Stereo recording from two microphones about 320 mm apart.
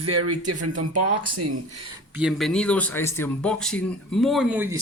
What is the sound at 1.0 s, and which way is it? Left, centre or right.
Speech, right.